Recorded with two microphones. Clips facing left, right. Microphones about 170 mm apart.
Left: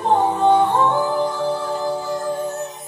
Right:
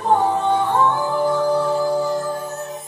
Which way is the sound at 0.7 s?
20° left (ahead or behind).